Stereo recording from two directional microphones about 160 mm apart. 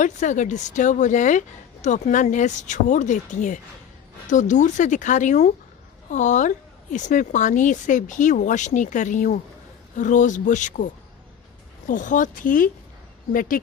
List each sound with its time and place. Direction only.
0.0 s speech: 50° left (ahead or behind)
11.9 s speech: 55° left (ahead or behind)